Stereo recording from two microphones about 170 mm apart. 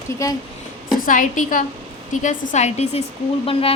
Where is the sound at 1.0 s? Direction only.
50° left (ahead or behind).